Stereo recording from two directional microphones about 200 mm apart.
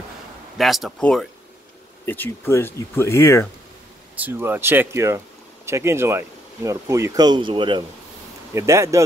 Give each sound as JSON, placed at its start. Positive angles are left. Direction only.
{"t": 0.6, "sound": "speech", "side_deg": 0}
{"t": 4.2, "sound": "speech", "side_deg": -10}